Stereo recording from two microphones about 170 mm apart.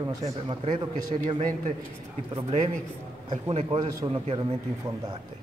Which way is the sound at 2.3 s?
45° right (ahead or behind).